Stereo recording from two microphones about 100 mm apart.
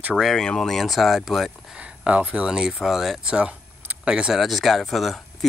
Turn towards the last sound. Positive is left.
turn(degrees=0)  # may be behind; listen again after turning